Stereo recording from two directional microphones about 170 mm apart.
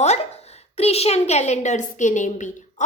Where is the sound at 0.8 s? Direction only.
35° left (ahead or behind).